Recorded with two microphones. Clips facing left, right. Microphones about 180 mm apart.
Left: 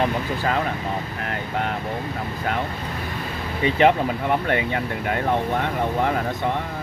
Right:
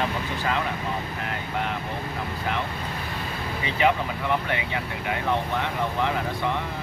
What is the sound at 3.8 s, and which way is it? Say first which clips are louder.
Speech: left 4 dB; 50° left (ahead or behind).